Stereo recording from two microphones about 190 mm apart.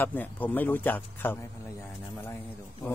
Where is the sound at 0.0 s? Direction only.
10° left (ahead or behind).